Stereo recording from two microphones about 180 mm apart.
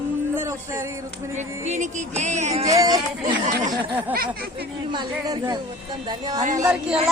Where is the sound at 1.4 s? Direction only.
40° right (ahead or behind).